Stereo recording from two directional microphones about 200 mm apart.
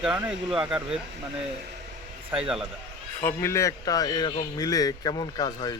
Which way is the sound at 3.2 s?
10° left (ahead or behind).